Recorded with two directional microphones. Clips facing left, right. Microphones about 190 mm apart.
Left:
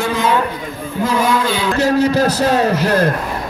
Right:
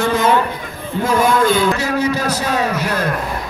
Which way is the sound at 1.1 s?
50° right (ahead or behind).